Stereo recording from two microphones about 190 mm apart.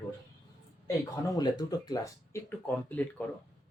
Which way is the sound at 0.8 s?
20° left (ahead or behind).